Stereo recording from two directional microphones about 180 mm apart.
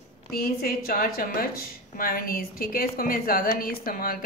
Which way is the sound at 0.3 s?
55° left (ahead or behind).